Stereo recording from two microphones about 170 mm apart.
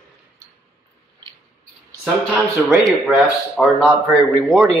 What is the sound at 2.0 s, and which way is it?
Speech, 10° right (ahead or behind).